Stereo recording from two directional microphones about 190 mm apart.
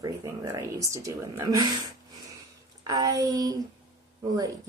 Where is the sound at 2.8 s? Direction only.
20° right (ahead or behind).